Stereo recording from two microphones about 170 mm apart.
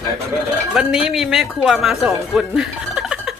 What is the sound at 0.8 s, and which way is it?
Speech, centre (ahead or behind).